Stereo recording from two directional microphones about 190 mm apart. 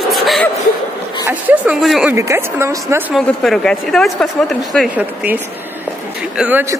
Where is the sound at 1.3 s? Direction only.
10° right (ahead or behind).